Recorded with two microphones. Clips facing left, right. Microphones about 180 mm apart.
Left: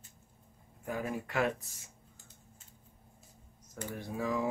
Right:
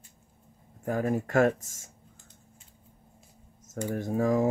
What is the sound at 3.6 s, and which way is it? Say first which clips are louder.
Speech: right 10 dB; 50° right (ahead or behind).